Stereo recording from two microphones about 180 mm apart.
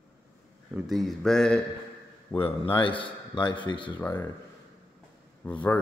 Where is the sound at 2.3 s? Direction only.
30° left (ahead or behind).